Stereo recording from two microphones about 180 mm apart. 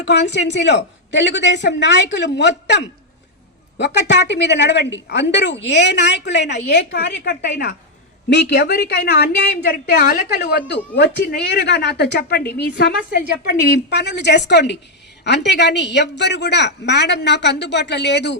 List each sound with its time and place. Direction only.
0.0 s a woman's voice: 70° left (ahead or behind)